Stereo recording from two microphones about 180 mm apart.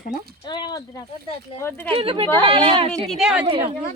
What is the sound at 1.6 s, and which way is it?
Speech, 15° left (ahead or behind).